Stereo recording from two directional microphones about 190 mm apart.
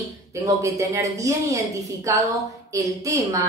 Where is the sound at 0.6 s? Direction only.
15° right (ahead or behind).